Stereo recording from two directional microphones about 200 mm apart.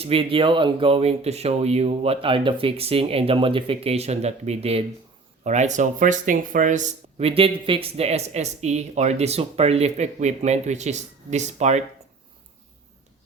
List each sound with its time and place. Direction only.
0.0 s speech: 25° right (ahead or behind)